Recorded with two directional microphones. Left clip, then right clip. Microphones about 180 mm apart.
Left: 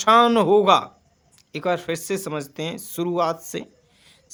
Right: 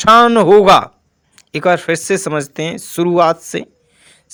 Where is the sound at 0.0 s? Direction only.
35° right (ahead or behind).